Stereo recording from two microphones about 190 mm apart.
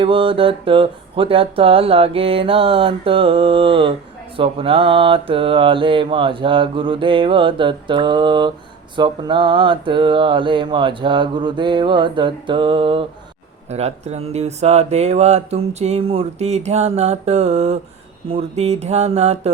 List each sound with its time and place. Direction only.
0.0 s mantra: 30° right (ahead or behind)
13.7 s speech: 35° right (ahead or behind)